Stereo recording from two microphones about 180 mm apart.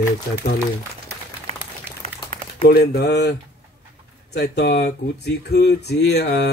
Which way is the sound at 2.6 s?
60° left (ahead or behind).